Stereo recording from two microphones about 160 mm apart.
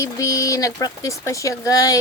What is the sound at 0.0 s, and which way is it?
Speech, 20° left (ahead or behind).